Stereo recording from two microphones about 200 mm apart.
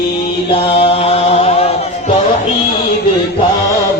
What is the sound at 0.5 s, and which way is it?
Chant, 30° left (ahead or behind).